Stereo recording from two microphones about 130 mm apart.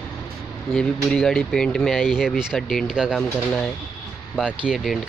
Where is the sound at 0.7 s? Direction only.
5° left (ahead or behind).